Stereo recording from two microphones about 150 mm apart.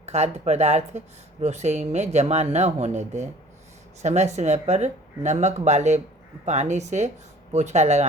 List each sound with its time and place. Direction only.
0.0 s speech: 45° right (ahead or behind)